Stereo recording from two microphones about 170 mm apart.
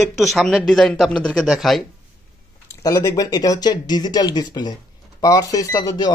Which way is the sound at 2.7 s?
20° left (ahead or behind).